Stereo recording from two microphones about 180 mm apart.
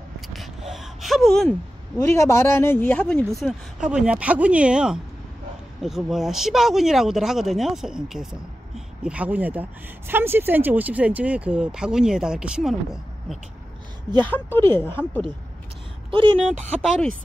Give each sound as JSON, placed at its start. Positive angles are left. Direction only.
{"t": 0.3, "sound": "gasp", "side_deg": 0}
{"t": 2.0, "sound": "speech", "side_deg": 15}
{"t": 3.3, "sound": "speech", "side_deg": -5}
{"t": 14.2, "sound": "speech", "side_deg": 10}
{"t": 16.1, "sound": "speech", "side_deg": -30}